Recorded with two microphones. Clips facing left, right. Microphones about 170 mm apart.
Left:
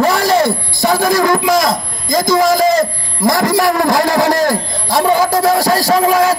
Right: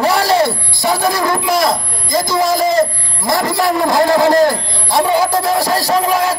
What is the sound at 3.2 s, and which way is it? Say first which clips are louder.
Speech: left 3 dB; 45° left (ahead or behind).